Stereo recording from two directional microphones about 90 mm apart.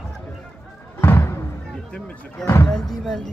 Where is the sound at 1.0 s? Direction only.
25° left (ahead or behind).